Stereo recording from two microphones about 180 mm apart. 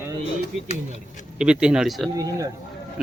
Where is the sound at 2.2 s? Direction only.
20° right (ahead or behind).